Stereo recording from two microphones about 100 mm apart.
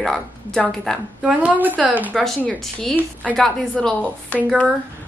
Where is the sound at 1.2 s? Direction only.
15° right (ahead or behind).